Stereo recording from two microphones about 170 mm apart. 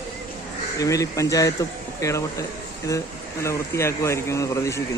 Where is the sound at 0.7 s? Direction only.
20° left (ahead or behind).